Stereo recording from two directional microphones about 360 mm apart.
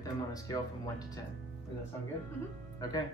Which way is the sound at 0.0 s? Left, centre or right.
Centre.